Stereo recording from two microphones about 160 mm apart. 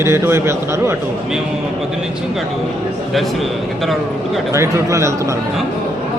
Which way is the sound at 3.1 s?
Centre (ahead or behind).